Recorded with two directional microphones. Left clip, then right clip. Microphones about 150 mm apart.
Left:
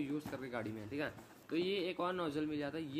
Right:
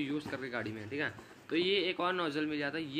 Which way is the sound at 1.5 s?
10° left (ahead or behind).